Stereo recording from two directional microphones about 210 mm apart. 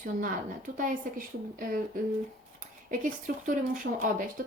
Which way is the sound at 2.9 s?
40° right (ahead or behind).